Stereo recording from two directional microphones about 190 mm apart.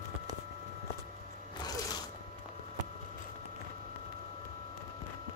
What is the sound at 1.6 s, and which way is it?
Music, 20° left (ahead or behind).